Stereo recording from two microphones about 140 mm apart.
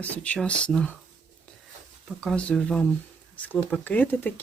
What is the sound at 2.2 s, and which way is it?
Speech, 5° left (ahead or behind).